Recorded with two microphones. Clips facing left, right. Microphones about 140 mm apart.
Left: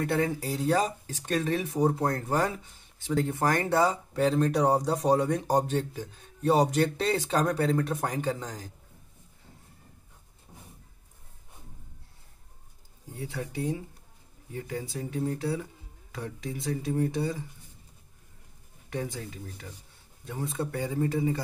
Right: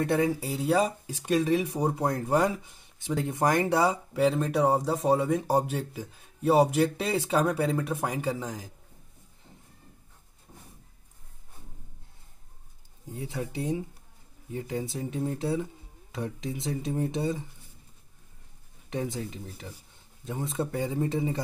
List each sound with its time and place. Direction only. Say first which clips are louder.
0.0 s speech: right 2 dB; 20° right (ahead or behind)
0.3 s speech: right 1 dB; 5° right (ahead or behind)
13.1 s speech: right 1 dB; 20° right (ahead or behind)
18.9 s speech: right 2 dB; 20° right (ahead or behind)